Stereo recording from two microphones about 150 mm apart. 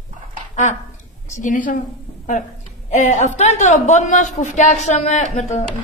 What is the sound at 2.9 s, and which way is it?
Speech, 50° left (ahead or behind).